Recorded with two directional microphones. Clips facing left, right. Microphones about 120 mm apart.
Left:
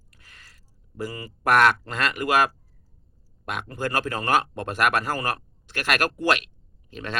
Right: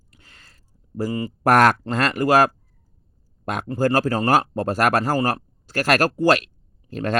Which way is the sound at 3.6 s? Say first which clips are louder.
Right 8 dB; 35° right (ahead or behind).